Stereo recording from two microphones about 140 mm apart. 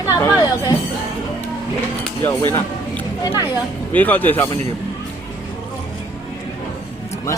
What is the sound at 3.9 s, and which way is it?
Speech, 10° left (ahead or behind).